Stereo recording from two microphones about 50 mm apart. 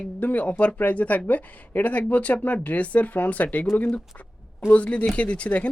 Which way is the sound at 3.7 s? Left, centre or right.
Centre.